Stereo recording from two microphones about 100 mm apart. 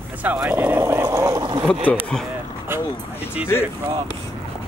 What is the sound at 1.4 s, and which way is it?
Speech, 45° right (ahead or behind).